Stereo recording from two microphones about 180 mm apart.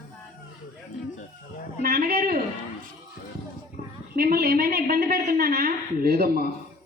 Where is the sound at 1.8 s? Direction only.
55° right (ahead or behind).